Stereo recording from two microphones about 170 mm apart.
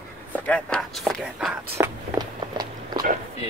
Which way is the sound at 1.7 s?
25° right (ahead or behind).